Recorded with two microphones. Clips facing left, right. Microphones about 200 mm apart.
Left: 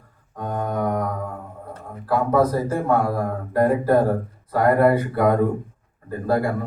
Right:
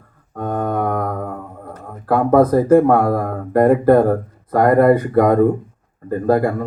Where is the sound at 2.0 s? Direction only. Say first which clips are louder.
Right 6 dB; 55° right (ahead or behind).